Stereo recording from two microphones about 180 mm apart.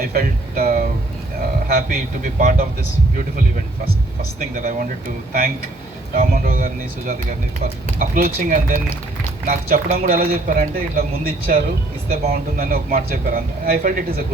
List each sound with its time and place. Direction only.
0.0 s a man's voice: 55° right (ahead or behind)
4.2 s a man's voice: 50° right (ahead or behind)
6.1 s a man's voice: 50° right (ahead or behind)